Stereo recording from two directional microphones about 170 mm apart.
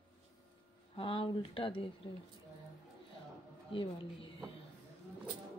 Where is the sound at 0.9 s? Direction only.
30° left (ahead or behind).